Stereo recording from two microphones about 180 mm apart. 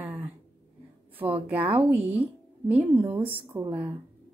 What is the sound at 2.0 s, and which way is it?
A woman's voice, 10° right (ahead or behind).